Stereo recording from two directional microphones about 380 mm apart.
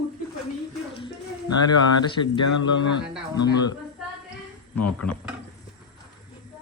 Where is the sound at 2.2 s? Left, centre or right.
Left.